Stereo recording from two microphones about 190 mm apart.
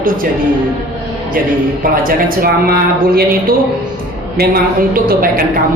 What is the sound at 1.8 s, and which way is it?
A woman's voice, 50° right (ahead or behind).